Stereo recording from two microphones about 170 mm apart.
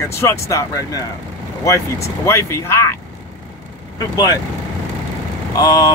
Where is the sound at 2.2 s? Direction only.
15° left (ahead or behind).